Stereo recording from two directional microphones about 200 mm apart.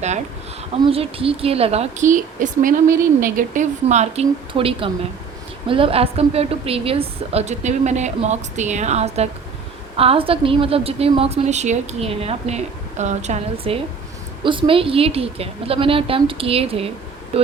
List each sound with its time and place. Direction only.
0.7 s a woman's voice: 30° right (ahead or behind)